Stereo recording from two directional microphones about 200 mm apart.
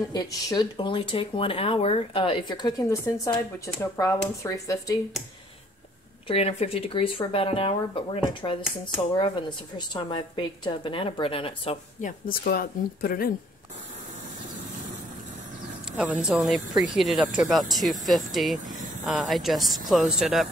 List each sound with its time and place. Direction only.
0.1 s speech: 20° left (ahead or behind)
6.2 s speech: 30° left (ahead or behind)
12.0 s speech: 50° left (ahead or behind)
16.2 s speech: centre (ahead or behind)